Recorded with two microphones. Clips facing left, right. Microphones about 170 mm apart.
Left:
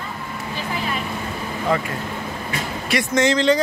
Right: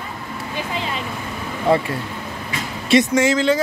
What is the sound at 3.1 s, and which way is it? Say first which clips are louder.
Speech: even; 10° right (ahead or behind).